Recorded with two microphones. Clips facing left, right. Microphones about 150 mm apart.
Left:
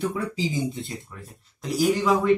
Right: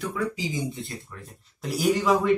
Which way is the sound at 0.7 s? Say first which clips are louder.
Left 2 dB; 20° left (ahead or behind).